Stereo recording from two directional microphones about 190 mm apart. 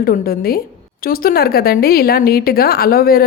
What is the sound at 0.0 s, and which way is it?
A woman's voice, 50° left (ahead or behind).